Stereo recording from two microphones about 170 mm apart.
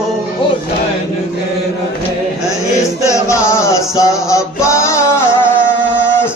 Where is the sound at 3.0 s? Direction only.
15° left (ahead or behind).